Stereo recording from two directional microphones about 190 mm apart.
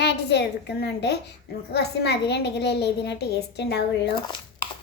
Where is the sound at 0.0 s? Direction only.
65° left (ahead or behind).